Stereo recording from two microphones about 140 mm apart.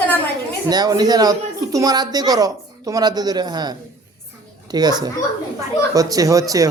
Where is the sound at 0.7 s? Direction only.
30° right (ahead or behind).